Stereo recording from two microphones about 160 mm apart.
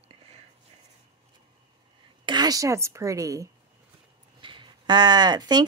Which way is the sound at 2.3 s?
25° right (ahead or behind).